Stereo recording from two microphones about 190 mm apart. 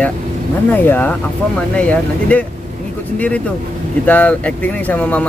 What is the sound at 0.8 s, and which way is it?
Speech, 10° left (ahead or behind).